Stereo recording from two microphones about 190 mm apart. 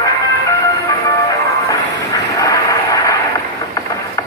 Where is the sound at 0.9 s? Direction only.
15° left (ahead or behind).